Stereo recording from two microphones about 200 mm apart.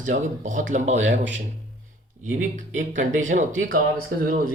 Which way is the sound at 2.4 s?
40° right (ahead or behind).